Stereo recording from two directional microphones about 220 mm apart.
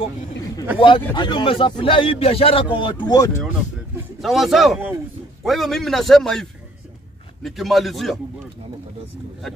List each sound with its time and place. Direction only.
0.7 s a man's voice: 25° left (ahead or behind)
4.2 s a man's voice: centre (ahead or behind)
7.4 s a man's voice: centre (ahead or behind)